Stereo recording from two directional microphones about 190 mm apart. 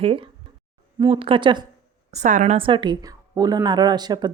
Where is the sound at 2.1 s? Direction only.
40° right (ahead or behind).